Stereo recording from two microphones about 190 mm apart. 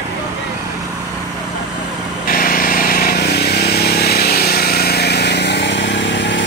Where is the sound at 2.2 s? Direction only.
50° left (ahead or behind).